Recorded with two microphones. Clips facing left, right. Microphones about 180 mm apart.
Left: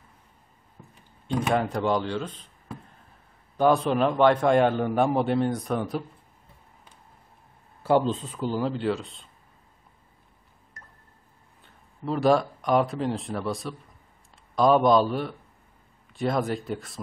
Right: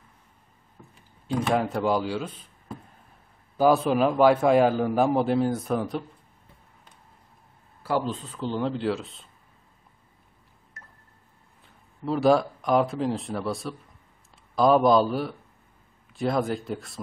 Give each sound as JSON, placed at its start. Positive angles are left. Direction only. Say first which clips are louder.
{"t": 1.5, "sound": "a man's voice", "louder": "even", "side_deg": 0}
{"t": 3.5, "sound": "a man's voice", "louder": "right 1 dB", "side_deg": -5}
{"t": 7.8, "sound": "speech", "louder": "left 5 dB", "side_deg": 25}
{"t": 8.4, "sound": "a man's voice", "louder": "right 2 dB", "side_deg": 5}
{"t": 10.8, "sound": "a sound", "louder": "even", "side_deg": 0}
{"t": 11.6, "sound": "a man's voice", "louder": "right 1 dB", "side_deg": 0}